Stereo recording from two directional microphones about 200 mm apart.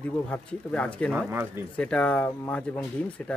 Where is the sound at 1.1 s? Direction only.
10° right (ahead or behind).